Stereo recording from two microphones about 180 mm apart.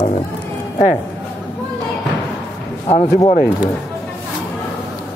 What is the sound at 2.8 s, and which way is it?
Speech, 40° left (ahead or behind).